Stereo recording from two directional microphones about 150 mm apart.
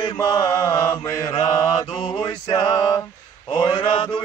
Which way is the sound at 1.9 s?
35° left (ahead or behind).